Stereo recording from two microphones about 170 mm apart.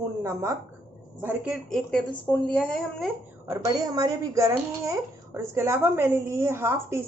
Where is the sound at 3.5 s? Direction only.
20° right (ahead or behind).